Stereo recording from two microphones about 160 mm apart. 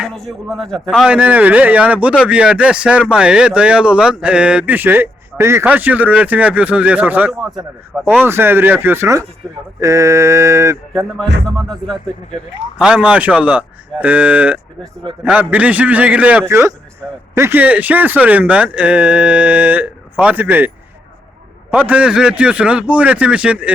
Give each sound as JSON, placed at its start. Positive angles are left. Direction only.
{"t": 0.0, "sound": "a man's voice", "side_deg": 0}
{"t": 9.8, "sound": "mantra", "side_deg": -20}
{"t": 12.8, "sound": "a man's voice", "side_deg": -5}
{"t": 21.8, "sound": "a man's voice", "side_deg": -10}